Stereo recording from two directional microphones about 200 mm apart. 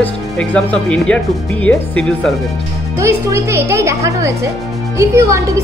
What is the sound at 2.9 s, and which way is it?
A woman's voice, 15° right (ahead or behind).